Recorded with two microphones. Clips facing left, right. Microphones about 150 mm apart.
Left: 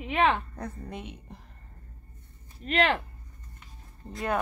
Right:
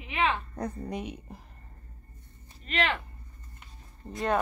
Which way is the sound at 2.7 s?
45° left (ahead or behind).